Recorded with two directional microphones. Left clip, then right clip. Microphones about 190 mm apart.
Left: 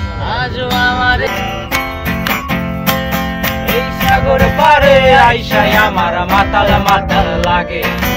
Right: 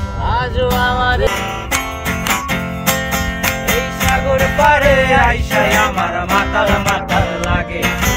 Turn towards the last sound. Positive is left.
turn(degrees=-15)  # may be behind; listen again after turning